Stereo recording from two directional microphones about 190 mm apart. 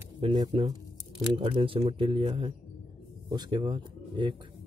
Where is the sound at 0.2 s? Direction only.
25° right (ahead or behind).